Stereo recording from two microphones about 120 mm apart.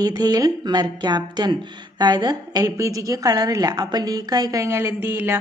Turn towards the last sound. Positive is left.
turn(degrees=-20)  # may be behind; listen again after turning